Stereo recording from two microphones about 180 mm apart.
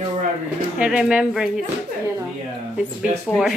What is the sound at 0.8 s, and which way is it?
Speech, 5° right (ahead or behind).